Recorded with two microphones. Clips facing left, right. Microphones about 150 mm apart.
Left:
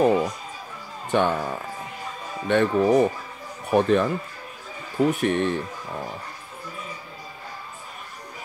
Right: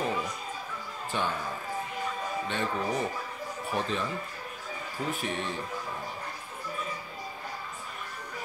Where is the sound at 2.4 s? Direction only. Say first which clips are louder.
Left 14 dB; 60° left (ahead or behind).